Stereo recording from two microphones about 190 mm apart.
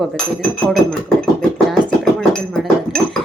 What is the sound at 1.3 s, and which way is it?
Speech, 5° left (ahead or behind).